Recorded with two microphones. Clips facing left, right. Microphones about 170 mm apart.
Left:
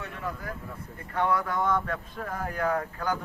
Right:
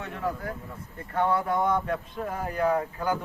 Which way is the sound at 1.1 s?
30° right (ahead or behind).